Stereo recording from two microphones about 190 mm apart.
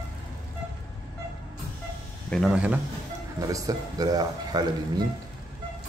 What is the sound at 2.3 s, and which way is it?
Speech, centre (ahead or behind).